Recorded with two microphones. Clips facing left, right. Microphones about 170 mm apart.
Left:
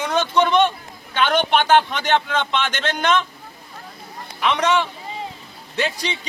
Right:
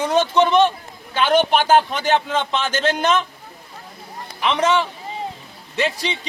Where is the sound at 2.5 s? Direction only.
35° right (ahead or behind).